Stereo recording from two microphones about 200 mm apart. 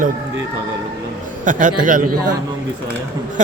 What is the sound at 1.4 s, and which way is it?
Speech, 40° right (ahead or behind).